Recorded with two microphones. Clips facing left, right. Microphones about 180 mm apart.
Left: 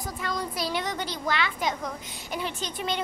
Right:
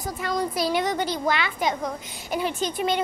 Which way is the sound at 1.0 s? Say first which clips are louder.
Right 7 dB; 50° right (ahead or behind).